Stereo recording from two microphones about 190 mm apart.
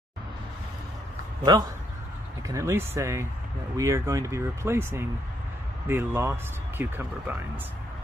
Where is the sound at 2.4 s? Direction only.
15° right (ahead or behind).